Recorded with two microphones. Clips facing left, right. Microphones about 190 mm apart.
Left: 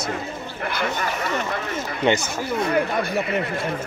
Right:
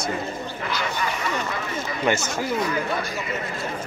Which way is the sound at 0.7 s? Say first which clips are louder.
Left 2 dB; 55° left (ahead or behind).